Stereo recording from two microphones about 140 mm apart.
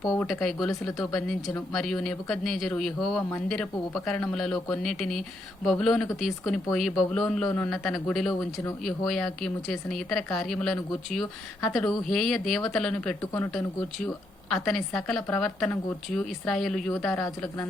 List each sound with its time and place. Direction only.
0.3 s speech: 5° left (ahead or behind)
17.1 s speech: 15° left (ahead or behind)